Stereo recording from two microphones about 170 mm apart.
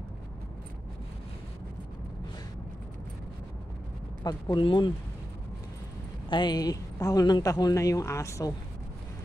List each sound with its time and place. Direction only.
4.2 s speech: 25° left (ahead or behind)
6.2 s speech: 25° left (ahead or behind)